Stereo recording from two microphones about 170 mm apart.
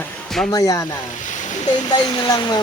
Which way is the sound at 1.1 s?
45° left (ahead or behind).